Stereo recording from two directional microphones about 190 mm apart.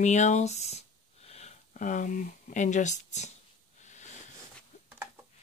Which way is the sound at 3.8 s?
40° left (ahead or behind).